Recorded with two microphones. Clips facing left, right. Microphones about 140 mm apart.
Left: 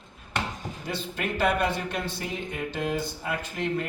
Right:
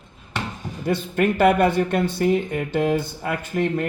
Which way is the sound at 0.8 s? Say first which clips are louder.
Right 11 dB; 55° right (ahead or behind).